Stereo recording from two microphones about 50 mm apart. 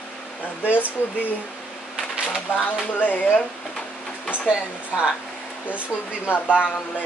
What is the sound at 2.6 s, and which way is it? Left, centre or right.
Music, left.